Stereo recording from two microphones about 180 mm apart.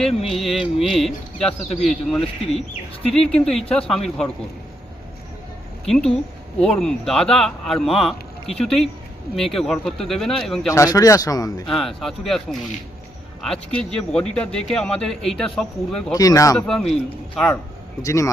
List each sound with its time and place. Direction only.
0.0 s speech: centre (ahead or behind)
5.8 s speech: 5° left (ahead or behind)
10.7 s a man's voice: 20° left (ahead or behind)
11.7 s speech: centre (ahead or behind)
13.7 s speech: 5° left (ahead or behind)
16.1 s a man's voice: 20° left (ahead or behind)
16.9 s speech: 5° left (ahead or behind)
18.0 s a man's voice: 15° left (ahead or behind)